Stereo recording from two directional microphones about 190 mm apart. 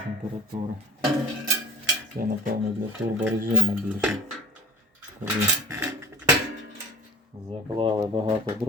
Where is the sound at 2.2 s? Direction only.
50° right (ahead or behind).